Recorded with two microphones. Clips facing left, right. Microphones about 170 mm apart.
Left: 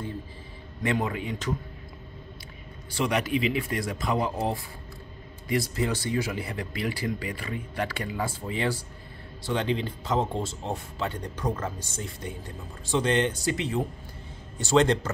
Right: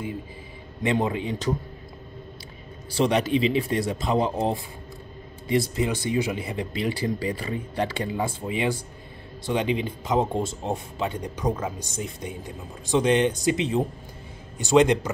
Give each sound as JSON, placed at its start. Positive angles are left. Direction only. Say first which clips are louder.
{"t": 0.8, "sound": "speech", "louder": "right 4 dB", "side_deg": -25}
{"t": 3.0, "sound": "speech", "louder": "right 4 dB", "side_deg": -30}